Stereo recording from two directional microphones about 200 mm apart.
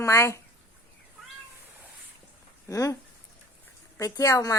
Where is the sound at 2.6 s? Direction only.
15° left (ahead or behind).